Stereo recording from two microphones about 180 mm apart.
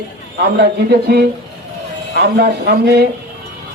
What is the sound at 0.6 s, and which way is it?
A man's voice, 60° right (ahead or behind).